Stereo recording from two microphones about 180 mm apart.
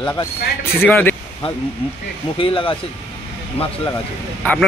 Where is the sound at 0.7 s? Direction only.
10° left (ahead or behind).